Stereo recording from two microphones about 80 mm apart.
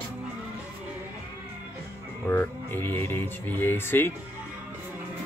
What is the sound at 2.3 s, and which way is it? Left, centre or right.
Speech, left.